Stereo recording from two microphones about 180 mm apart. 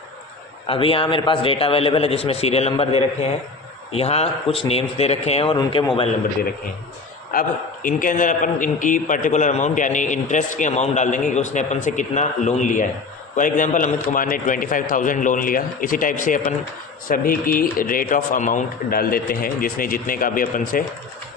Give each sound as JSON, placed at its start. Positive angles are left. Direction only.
{"t": 0.7, "sound": "a man's voice", "side_deg": 30}
{"t": 7.3, "sound": "a man's voice", "side_deg": 50}